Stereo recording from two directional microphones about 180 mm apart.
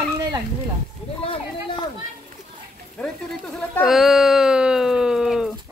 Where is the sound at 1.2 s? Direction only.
25° left (ahead or behind).